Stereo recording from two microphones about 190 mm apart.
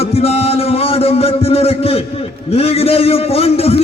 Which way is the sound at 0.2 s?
30° left (ahead or behind).